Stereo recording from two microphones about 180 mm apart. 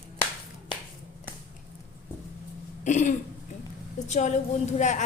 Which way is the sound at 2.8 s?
40° left (ahead or behind).